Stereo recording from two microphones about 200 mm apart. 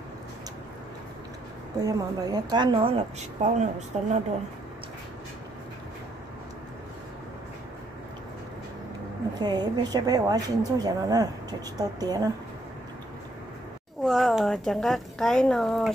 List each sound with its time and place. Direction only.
1.8 s speech: 20° right (ahead or behind); by 4.2 s 35° right (ahead or behind)
9.4 s speech: 20° right (ahead or behind)
14.0 s a woman's voice: centre (ahead or behind)